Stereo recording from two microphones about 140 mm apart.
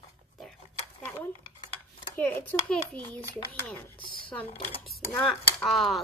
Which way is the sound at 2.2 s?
10° left (ahead or behind).